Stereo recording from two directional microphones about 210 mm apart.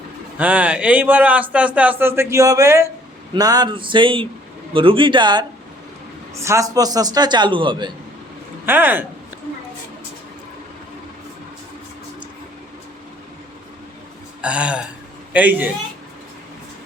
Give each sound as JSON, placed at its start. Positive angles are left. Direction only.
{"t": 0.3, "sound": "a man's voice", "side_deg": -5}
{"t": 8.6, "sound": "a man's voice", "side_deg": -10}
{"t": 14.4, "sound": "a sound", "side_deg": -5}
{"t": 15.3, "sound": "a man's voice", "side_deg": -5}